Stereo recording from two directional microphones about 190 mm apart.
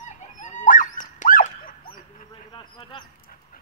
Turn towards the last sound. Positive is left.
turn(degrees=25)  # may be behind; listen again after turning